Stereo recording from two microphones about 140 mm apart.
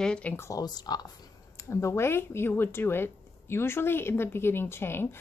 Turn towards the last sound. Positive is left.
turn(degrees=15)  # may be behind; listen again after turning